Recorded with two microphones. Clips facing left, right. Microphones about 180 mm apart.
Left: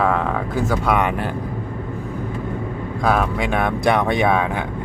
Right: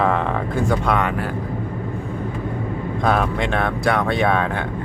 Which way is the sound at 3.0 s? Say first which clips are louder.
Left 1 dB; 5° left (ahead or behind).